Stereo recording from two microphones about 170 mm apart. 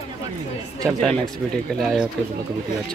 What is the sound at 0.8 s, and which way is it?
Speech, 5° left (ahead or behind).